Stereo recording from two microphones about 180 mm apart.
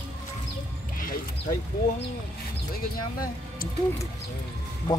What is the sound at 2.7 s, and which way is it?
Speech, 55° left (ahead or behind).